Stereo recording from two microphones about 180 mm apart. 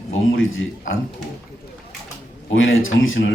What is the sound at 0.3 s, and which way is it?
Speech, 90° left.